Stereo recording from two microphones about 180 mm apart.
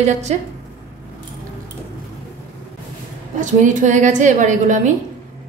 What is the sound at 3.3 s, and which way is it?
A woman's voice, 45° right (ahead or behind).